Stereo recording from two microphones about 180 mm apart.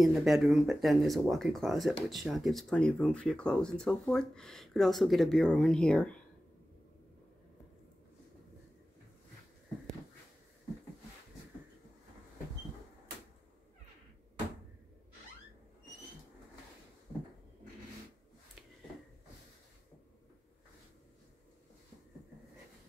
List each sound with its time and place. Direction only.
0.0 s speech: centre (ahead or behind)